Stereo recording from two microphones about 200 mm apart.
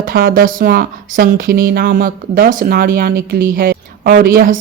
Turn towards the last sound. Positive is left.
turn(degrees=-45)  # may be behind; listen again after turning